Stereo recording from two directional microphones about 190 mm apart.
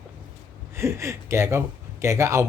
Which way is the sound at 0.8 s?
15° right (ahead or behind).